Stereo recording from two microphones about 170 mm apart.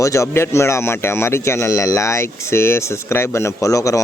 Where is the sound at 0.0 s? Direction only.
15° left (ahead or behind).